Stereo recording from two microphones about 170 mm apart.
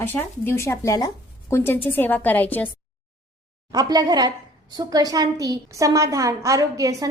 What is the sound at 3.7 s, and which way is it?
A woman's voice, 20° right (ahead or behind).